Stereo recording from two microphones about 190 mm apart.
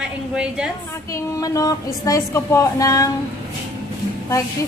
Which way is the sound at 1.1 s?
20° left (ahead or behind).